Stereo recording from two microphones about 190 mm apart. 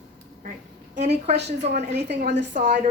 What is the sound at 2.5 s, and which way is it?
Speech, 40° right (ahead or behind).